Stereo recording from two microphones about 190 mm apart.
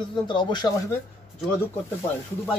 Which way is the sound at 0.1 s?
25° left (ahead or behind).